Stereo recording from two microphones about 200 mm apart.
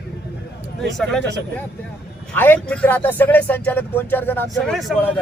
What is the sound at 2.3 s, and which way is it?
A man's voice, 10° left (ahead or behind).